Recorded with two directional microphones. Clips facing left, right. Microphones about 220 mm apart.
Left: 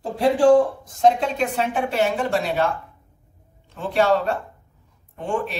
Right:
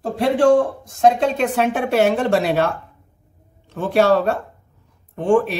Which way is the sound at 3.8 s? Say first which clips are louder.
Right 4 dB; 75° right (ahead or behind).